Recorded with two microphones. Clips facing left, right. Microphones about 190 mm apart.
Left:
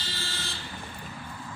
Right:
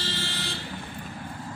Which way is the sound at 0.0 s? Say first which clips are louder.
Right 5 dB; 70° right (ahead or behind).